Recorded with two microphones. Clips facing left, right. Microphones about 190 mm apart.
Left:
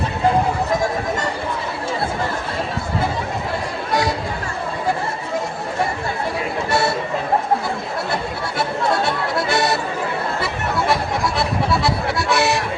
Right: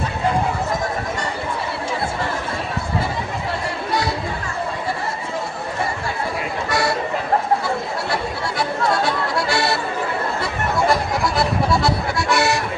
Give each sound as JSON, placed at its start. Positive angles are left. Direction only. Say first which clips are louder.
{"t": 9.5, "sound": "chatter", "louder": "left 2 dB", "side_deg": 20}
{"t": 11.3, "sound": "accordion", "louder": "right 2 dB", "side_deg": 0}